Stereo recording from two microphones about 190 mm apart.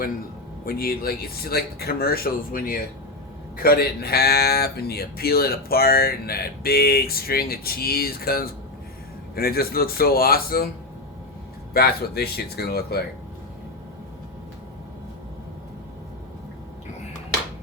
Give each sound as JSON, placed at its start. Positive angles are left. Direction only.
{"t": 0.6, "sound": "speech", "side_deg": 50}
{"t": 11.7, "sound": "speech", "side_deg": 55}